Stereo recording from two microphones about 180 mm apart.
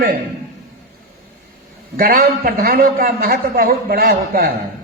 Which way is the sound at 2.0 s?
55° right (ahead or behind).